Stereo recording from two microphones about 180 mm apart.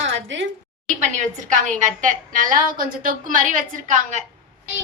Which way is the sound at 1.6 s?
45° right (ahead or behind).